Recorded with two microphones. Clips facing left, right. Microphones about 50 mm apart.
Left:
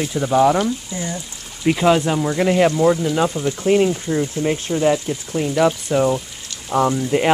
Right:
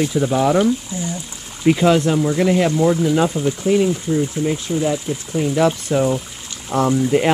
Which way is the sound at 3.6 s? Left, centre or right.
Left.